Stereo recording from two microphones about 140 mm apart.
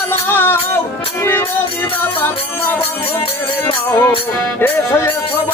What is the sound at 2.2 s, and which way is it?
Speech, 15° left (ahead or behind).